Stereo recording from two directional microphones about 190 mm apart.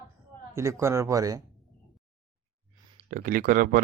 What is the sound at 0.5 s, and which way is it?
Speech, 15° right (ahead or behind).